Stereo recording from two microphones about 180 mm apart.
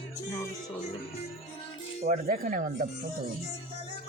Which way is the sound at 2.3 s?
45° right (ahead or behind).